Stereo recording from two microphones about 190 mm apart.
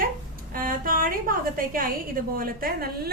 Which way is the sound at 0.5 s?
50° right (ahead or behind).